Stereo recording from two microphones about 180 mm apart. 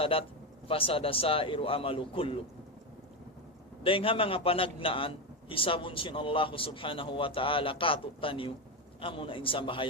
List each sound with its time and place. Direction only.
0.0 s a man's voice: 30° left (ahead or behind)
3.8 s speech: 30° left (ahead or behind)